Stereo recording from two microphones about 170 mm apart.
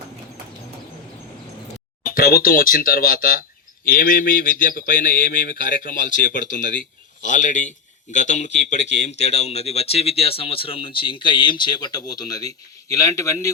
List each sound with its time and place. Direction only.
2.0 s bird: 60° left (ahead or behind)
7.2 s a man's voice: 50° left (ahead or behind); by 13.5 s 15° left (ahead or behind)